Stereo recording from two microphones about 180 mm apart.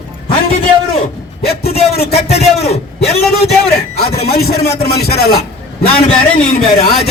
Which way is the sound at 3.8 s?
60° left (ahead or behind).